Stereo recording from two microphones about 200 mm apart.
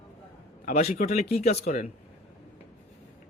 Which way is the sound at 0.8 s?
35° left (ahead or behind).